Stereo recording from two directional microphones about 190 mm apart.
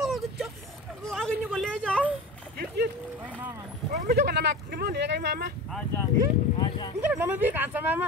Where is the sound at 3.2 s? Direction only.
10° right (ahead or behind).